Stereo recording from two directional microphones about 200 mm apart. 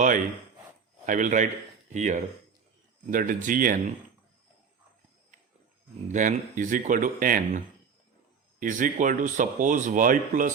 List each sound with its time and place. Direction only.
1.0 s speech: 40° right (ahead or behind)
6.1 s speech: 40° right (ahead or behind)